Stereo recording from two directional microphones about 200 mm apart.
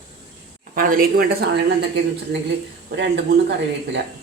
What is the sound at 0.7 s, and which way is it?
Speech, 45° right (ahead or behind).